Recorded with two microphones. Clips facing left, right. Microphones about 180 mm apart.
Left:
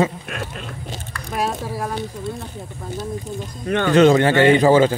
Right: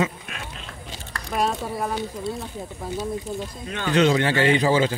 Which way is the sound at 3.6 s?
60° left (ahead or behind).